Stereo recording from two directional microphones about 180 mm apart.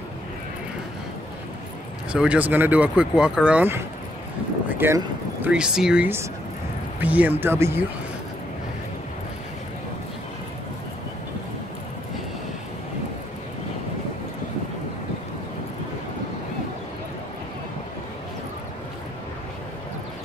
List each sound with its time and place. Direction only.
2.1 s speech: 5° right (ahead or behind)